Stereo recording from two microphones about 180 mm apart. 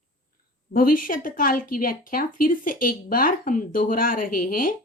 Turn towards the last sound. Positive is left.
turn(degrees=50)  # may be behind; listen again after turning